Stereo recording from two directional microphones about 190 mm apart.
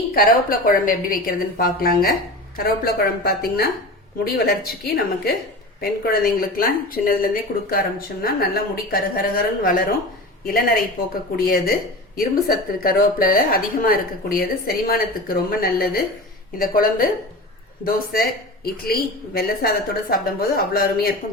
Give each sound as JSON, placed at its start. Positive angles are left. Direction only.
{"t": 0.1, "sound": "a woman's voice", "side_deg": 50}